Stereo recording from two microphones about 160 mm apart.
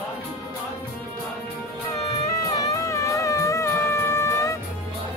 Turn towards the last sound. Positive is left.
turn(degrees=20)  # may be behind; listen again after turning